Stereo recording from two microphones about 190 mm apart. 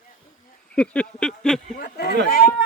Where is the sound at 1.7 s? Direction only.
55° left (ahead or behind).